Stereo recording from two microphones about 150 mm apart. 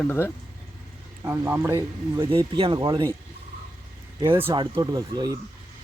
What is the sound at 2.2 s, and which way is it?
Speech, 35° right (ahead or behind).